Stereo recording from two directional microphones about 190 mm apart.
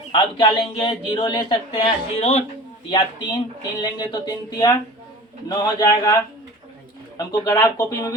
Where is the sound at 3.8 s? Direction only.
20° left (ahead or behind).